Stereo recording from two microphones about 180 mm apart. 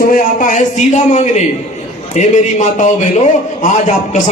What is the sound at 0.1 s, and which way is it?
A man's voice, 45° left (ahead or behind).